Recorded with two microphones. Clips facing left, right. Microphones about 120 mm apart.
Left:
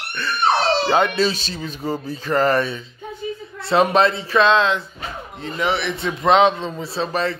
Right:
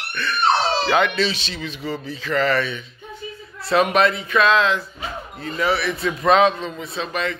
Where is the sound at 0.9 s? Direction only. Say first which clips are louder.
Left 2 dB; 40° left (ahead or behind).